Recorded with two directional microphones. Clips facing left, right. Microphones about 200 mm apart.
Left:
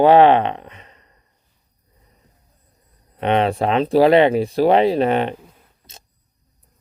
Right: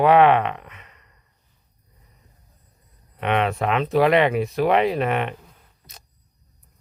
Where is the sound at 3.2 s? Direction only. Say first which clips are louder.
Left 4 dB; 30° left (ahead or behind).